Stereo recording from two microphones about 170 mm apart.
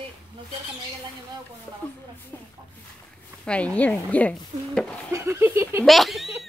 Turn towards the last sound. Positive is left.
turn(degrees=0)  # may be behind; listen again after turning